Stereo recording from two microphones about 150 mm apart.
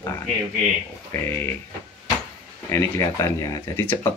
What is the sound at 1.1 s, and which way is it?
Speech, 15° left (ahead or behind).